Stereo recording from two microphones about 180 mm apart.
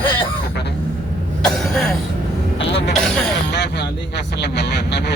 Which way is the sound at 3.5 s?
75° left (ahead or behind).